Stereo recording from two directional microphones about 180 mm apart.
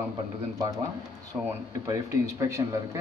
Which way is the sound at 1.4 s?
15° right (ahead or behind).